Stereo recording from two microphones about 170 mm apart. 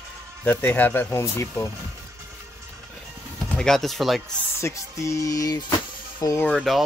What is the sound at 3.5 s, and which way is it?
Speech, 5° left (ahead or behind).